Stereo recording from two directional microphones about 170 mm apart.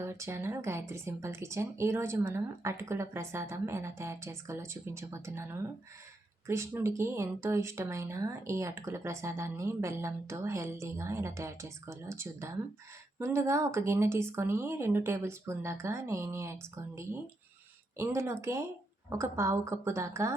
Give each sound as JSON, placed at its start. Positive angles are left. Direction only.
{"t": 0.0, "sound": "speech", "side_deg": -15}